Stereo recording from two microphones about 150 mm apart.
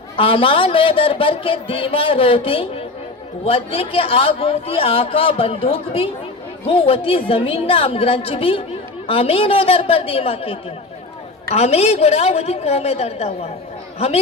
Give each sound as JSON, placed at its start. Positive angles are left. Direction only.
{"t": 0.2, "sound": "a man's voice", "side_deg": 35}